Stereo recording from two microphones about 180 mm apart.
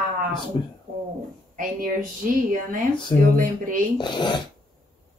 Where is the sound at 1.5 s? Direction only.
50° right (ahead or behind).